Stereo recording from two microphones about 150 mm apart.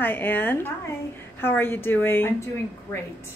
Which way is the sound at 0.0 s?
15° left (ahead or behind).